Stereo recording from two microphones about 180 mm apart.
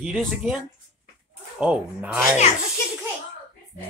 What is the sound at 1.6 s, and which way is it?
Speech, 5° right (ahead or behind).